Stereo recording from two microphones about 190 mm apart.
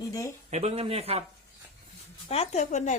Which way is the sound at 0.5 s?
35° right (ahead or behind).